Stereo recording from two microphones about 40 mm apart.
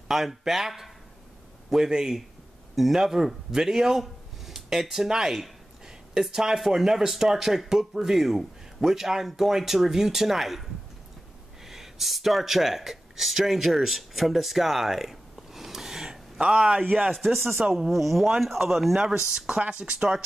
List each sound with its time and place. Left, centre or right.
0.1 s a man's voice: centre
16.8 s speech: right
17.1 s speech: centre
17.6 s speech: centre
17.9 s speech: centre
19.0 s speech: centre